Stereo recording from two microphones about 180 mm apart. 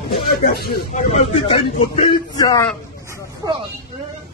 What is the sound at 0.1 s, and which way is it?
Speech, 60° left (ahead or behind).